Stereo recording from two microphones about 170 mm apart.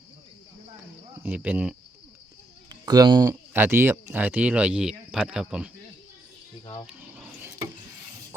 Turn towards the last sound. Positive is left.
turn(degrees=-15)  # may be behind; listen again after turning